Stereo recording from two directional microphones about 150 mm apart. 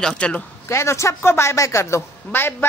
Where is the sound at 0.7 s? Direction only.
20° left (ahead or behind).